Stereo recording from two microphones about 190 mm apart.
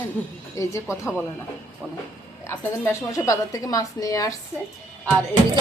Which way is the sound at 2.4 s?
15° left (ahead or behind).